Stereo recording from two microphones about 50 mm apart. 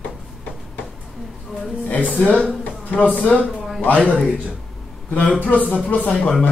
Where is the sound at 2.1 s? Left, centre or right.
Left.